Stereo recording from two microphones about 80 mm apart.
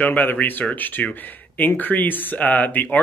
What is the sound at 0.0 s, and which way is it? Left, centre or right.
Speech, left.